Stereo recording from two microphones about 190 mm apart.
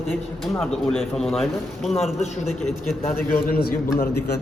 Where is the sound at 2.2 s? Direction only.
35° left (ahead or behind).